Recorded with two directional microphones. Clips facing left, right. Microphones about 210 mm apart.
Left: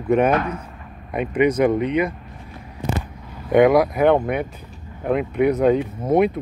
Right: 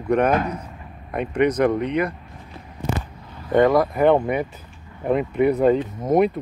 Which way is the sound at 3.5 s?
10° left (ahead or behind).